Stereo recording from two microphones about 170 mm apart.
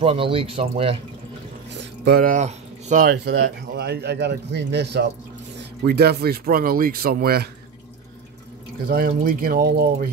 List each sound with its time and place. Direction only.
0.0 s speech: 35° right (ahead or behind)
1.7 s a sound: 80° right; by 3.1 s 45° right (ahead or behind)
3.1 s speech: 70° right (ahead or behind)
5.9 s speech: 70° right (ahead or behind)
8.8 s speech: 60° right (ahead or behind)